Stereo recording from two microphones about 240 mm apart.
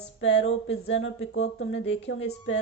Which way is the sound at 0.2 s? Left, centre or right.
Left.